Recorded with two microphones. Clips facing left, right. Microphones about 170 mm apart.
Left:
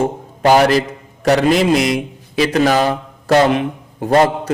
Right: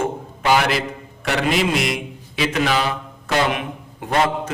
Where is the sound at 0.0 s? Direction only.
40° left (ahead or behind).